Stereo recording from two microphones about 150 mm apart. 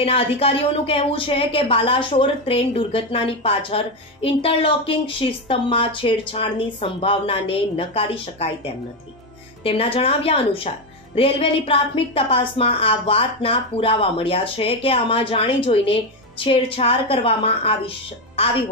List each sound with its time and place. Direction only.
0.0 s a woman's voice: 40° left (ahead or behind)
9.6 s a woman's voice: 40° left (ahead or behind)